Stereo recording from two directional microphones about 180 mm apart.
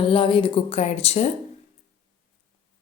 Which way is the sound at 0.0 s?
30° left (ahead or behind).